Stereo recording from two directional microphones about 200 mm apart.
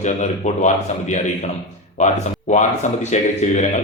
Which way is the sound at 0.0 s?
35° left (ahead or behind).